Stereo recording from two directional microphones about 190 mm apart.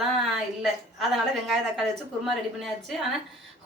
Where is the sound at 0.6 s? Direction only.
Centre (ahead or behind).